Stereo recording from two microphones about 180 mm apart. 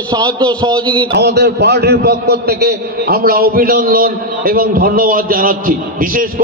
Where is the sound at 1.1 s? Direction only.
65° right (ahead or behind).